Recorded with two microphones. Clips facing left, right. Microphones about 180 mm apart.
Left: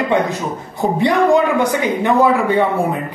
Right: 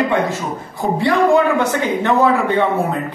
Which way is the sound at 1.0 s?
15° left (ahead or behind).